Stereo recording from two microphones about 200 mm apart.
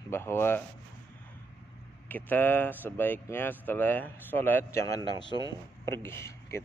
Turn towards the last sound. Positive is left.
turn(degrees=15)  # may be behind; listen again after turning